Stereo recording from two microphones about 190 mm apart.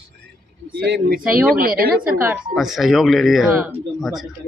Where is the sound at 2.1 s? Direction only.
10° right (ahead or behind).